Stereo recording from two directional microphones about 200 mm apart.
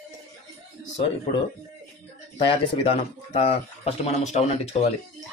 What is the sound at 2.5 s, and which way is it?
Speech, 30° left (ahead or behind).